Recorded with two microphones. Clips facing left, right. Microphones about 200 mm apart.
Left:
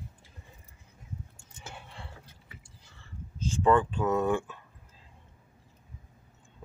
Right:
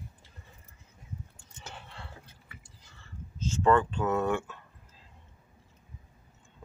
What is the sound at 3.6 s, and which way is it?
Speech, 15° left (ahead or behind).